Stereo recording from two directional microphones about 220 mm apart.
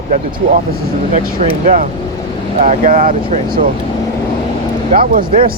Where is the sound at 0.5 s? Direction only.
40° right (ahead or behind).